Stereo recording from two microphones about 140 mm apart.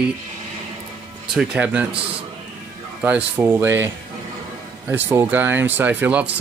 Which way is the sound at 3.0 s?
15° right (ahead or behind).